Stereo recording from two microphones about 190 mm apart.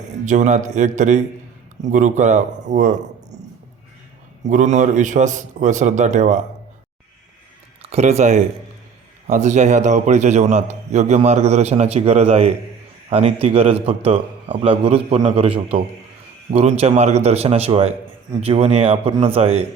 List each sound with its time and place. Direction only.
0.3 s a man's voice: 40° right (ahead or behind)
4.4 s a man's voice: 40° right (ahead or behind)
7.8 s a man's voice: 35° right (ahead or behind)